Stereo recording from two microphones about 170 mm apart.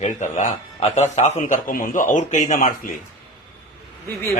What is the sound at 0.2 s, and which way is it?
A man's voice, 45° left (ahead or behind).